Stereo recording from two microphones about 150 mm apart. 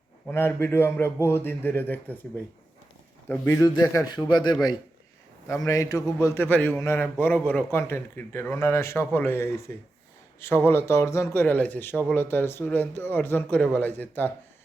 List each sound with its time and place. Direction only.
0.3 s speech: 15° left (ahead or behind)
3.2 s a man's voice: 15° left (ahead or behind)